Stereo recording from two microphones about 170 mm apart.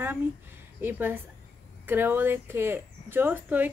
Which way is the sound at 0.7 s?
10° right (ahead or behind).